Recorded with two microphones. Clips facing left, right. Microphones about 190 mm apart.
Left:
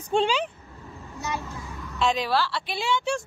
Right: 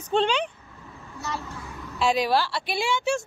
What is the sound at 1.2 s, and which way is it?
Speech, 15° left (ahead or behind).